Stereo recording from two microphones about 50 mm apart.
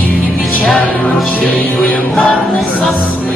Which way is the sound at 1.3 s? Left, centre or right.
Left.